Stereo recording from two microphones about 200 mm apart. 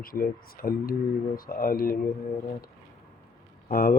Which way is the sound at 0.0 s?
45° left (ahead or behind).